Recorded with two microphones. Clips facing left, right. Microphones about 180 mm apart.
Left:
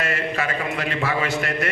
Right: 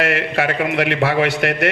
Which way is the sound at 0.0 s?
70° right (ahead or behind).